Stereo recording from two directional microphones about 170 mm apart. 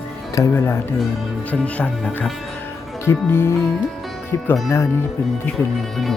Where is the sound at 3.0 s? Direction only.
15° left (ahead or behind).